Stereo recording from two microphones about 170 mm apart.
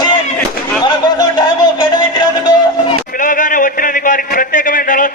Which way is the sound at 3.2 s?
50° left (ahead or behind).